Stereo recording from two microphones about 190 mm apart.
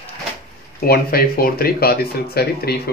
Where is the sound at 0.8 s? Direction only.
50° left (ahead or behind).